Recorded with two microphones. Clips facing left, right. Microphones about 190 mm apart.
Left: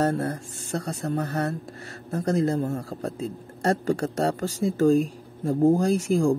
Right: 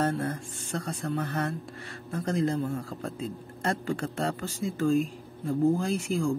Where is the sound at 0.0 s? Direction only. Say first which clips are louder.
Left 4 dB; 40° left (ahead or behind).